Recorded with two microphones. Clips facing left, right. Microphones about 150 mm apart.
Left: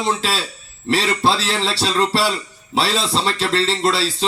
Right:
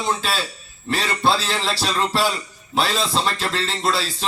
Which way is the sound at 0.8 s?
30° left (ahead or behind).